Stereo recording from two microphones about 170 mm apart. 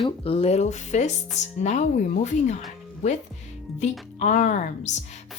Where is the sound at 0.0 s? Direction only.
35° left (ahead or behind).